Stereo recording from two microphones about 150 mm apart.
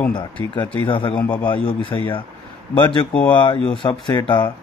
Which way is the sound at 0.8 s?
35° left (ahead or behind).